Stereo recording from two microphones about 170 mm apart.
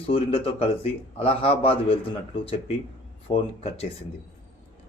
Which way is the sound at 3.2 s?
35° left (ahead or behind).